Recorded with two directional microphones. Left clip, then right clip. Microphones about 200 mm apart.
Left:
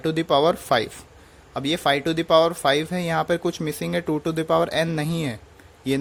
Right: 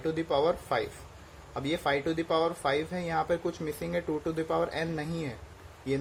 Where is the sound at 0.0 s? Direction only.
50° left (ahead or behind).